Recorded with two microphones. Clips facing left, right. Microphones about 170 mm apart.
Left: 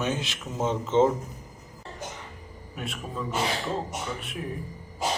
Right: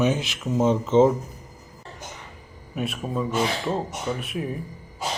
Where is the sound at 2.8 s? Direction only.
20° right (ahead or behind).